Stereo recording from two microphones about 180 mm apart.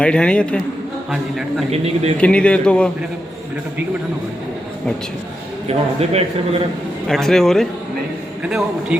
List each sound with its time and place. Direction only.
0.0 s a man's voice: 5° left (ahead or behind)
1.7 s a man's voice: 35° right (ahead or behind)
2.1 s a man's voice: 5° left (ahead or behind)
5.6 s a man's voice: 35° right (ahead or behind)
7.1 s a man's voice: centre (ahead or behind)